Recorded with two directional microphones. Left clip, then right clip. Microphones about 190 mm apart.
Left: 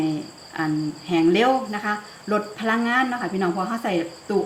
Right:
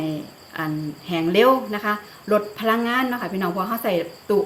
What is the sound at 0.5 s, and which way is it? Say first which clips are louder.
Speech: left 2 dB; 50° right (ahead or behind).